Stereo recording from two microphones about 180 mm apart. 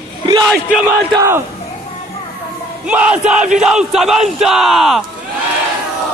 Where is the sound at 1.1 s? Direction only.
15° right (ahead or behind).